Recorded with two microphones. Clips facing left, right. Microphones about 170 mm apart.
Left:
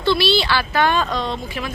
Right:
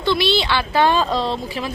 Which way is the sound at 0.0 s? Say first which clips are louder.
Left 1 dB; 20° right (ahead or behind).